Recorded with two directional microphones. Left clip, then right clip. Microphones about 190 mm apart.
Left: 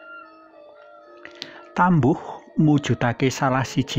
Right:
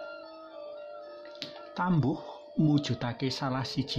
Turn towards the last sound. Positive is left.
turn(degrees=35)  # may be behind; listen again after turning